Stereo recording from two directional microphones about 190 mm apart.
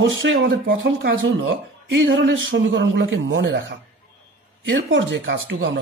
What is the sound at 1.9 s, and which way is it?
Speech, 70° right (ahead or behind).